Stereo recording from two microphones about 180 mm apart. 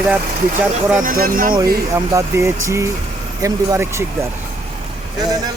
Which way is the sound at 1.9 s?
15° right (ahead or behind).